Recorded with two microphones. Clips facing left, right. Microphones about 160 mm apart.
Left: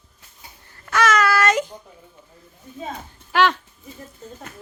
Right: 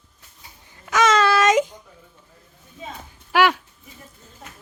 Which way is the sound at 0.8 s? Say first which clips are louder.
Right 1 dB; 20° right (ahead or behind).